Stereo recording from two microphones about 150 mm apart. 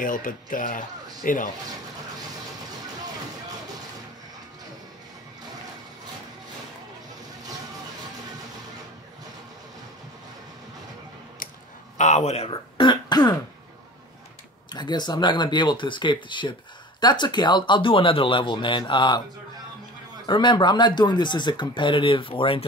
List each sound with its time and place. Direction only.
0.0 s speech: 65° left (ahead or behind)
11.4 s a sound: 65° left (ahead or behind)
12.0 s speech: 50° left (ahead or behind); by 13.4 s 30° left (ahead or behind)
14.7 s speech: 30° left (ahead or behind)
20.2 s speech: 30° left (ahead or behind)